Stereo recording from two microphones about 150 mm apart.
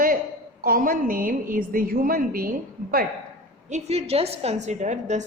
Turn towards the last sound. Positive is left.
turn(degrees=-50)  # may be behind; listen again after turning